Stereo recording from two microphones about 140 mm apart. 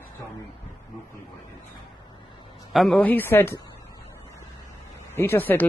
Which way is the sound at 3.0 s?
15° left (ahead or behind).